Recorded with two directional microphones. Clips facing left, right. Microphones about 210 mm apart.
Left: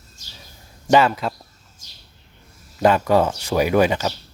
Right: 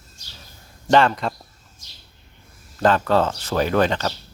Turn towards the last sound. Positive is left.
turn(degrees=10)  # may be behind; listen again after turning